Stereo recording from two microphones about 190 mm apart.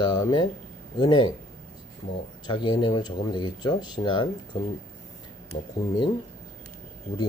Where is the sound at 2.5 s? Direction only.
25° left (ahead or behind).